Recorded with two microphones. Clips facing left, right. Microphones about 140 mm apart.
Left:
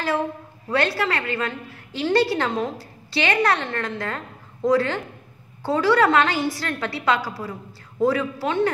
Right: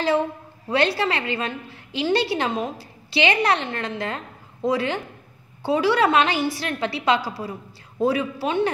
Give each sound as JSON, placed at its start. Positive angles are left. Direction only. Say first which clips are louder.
{"t": 0.7, "sound": "a woman's voice", "louder": "right 1 dB", "side_deg": -20}